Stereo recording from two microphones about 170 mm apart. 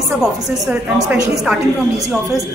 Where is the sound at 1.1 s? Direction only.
20° right (ahead or behind).